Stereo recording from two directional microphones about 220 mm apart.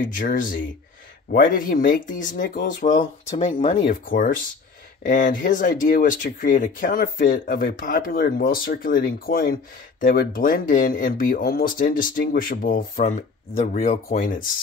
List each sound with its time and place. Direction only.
0.0 s speech: 40° left (ahead or behind)
3.9 s speech: 35° left (ahead or behind)